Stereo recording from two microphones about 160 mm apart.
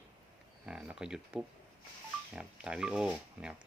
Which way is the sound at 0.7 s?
5° right (ahead or behind).